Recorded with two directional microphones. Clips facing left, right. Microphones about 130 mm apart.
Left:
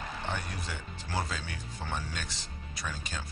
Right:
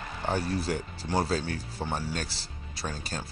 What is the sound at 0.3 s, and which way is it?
Speech, 35° right (ahead or behind).